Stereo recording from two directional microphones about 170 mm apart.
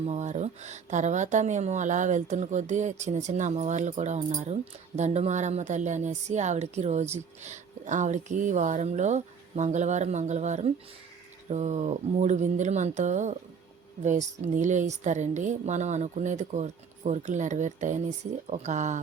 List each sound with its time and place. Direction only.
0.0 s speech: 40° right (ahead or behind)